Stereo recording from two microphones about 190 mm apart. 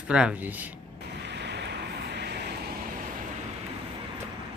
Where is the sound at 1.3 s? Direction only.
65° right (ahead or behind).